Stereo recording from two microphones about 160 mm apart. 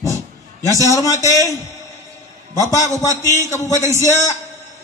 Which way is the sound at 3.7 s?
20° right (ahead or behind).